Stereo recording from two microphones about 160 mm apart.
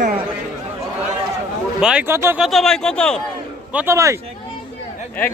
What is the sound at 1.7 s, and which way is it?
Speech, 5° right (ahead or behind).